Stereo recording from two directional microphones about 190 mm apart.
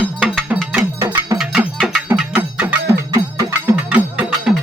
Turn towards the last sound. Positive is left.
turn(degrees=-5)  # may be behind; listen again after turning